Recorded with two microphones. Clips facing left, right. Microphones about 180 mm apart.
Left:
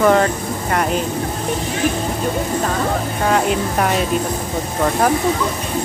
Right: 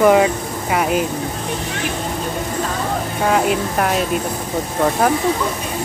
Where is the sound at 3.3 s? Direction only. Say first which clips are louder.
Even; centre (ahead or behind).